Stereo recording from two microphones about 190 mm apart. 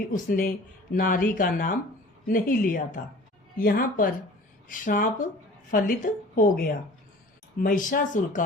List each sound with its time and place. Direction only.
0.1 s speech: 45° left (ahead or behind)